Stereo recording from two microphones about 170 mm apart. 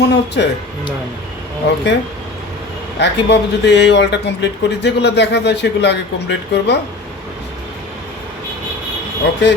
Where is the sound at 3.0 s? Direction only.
85° left.